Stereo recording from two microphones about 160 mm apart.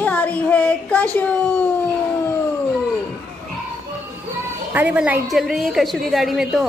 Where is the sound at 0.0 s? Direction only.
10° left (ahead or behind).